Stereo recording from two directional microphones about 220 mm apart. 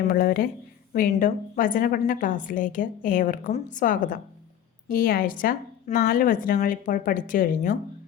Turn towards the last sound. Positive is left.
turn(degrees=40)  # may be behind; listen again after turning